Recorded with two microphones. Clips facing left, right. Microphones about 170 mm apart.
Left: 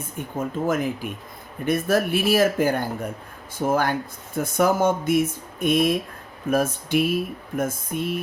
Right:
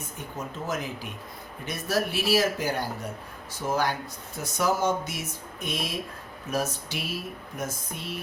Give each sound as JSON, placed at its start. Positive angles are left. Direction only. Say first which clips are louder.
{"t": 0.3, "sound": "speech", "louder": "left 9 dB", "side_deg": 55}